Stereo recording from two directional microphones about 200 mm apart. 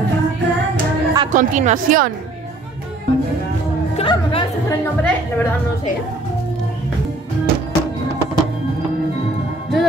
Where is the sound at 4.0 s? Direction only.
25° left (ahead or behind).